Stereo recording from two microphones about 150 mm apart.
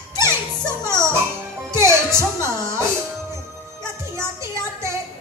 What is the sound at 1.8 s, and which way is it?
A woman's voice, 20° right (ahead or behind).